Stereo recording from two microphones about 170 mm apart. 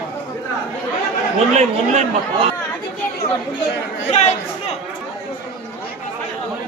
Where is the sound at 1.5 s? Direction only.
40° right (ahead or behind).